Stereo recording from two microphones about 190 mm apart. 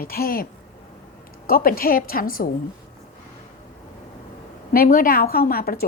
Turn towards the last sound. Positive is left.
turn(degrees=50)  # may be behind; listen again after turning